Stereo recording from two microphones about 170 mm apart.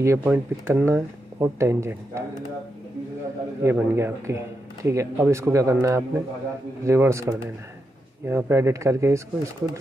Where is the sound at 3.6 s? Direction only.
15° right (ahead or behind).